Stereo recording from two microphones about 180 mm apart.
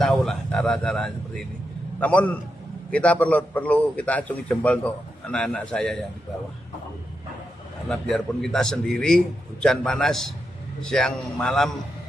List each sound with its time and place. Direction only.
0.0 s a man's voice: centre (ahead or behind)
7.9 s a man's voice: centre (ahead or behind)